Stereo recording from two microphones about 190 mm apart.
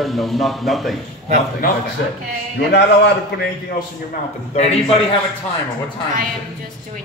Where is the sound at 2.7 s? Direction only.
65° left (ahead or behind).